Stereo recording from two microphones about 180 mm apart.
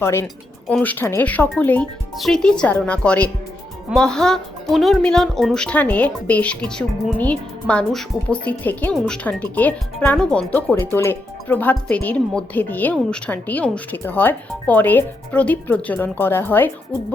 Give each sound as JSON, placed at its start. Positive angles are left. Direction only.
{"t": 0.0, "sound": "speech", "side_deg": 15}